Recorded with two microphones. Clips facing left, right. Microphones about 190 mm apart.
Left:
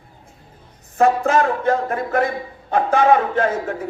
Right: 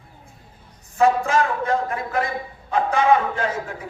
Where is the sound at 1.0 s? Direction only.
55° left (ahead or behind).